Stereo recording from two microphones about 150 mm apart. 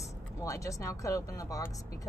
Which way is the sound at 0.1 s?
20° left (ahead or behind).